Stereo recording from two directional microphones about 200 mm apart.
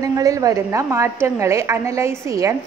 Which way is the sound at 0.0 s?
15° right (ahead or behind).